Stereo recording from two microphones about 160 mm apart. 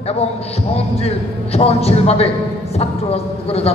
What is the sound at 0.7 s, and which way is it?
Speech, 40° left (ahead or behind).